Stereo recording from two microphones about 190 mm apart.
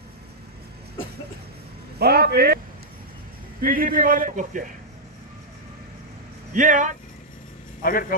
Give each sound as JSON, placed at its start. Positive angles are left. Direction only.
{"t": 2.0, "sound": "a man's voice", "side_deg": -55}
{"t": 3.6, "sound": "a man's voice", "side_deg": -45}
{"t": 6.5, "sound": "a man's voice", "side_deg": -40}
{"t": 7.8, "sound": "a man's voice", "side_deg": 50}